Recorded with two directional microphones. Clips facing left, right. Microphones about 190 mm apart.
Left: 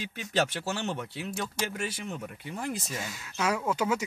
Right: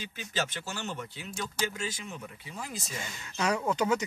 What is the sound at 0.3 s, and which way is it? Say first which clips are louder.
Speech: left 6 dB; 65° left (ahead or behind).